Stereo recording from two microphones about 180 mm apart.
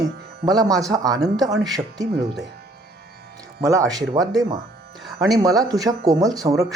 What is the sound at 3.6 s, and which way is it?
Speech, 15° right (ahead or behind).